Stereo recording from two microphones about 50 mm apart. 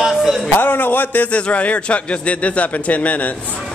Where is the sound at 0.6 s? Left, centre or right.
Left.